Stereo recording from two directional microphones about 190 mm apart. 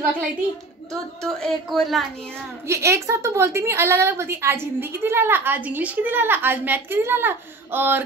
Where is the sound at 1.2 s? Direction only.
5° left (ahead or behind).